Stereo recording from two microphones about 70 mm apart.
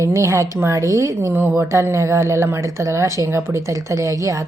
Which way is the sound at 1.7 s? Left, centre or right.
Right.